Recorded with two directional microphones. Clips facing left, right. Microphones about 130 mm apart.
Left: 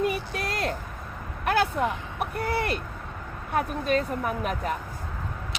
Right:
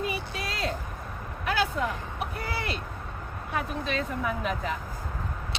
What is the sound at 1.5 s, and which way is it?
Speech, 55° left (ahead or behind).